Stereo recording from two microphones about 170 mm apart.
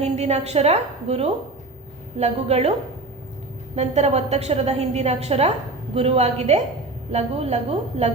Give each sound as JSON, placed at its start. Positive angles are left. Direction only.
{"t": 0.0, "sound": "a woman's voice", "side_deg": -40}
{"t": 3.8, "sound": "a woman's voice", "side_deg": -40}